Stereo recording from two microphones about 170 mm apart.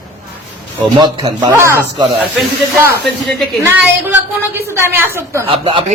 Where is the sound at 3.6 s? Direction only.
15° right (ahead or behind).